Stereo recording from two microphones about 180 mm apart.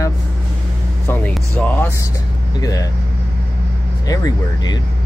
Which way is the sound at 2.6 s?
20° left (ahead or behind).